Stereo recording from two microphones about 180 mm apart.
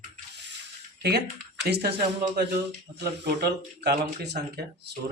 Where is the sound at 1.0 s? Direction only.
60° right (ahead or behind).